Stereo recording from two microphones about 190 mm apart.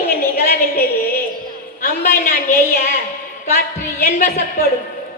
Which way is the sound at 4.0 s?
50° left (ahead or behind).